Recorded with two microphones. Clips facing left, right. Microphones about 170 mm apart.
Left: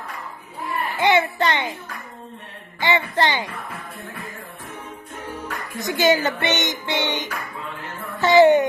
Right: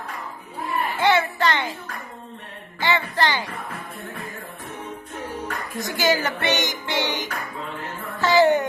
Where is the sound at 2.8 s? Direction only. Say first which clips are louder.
Left 2 dB; 20° left (ahead or behind).